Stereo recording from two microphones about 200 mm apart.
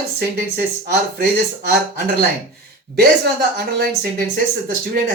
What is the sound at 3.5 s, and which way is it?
Speech, 50° right (ahead or behind).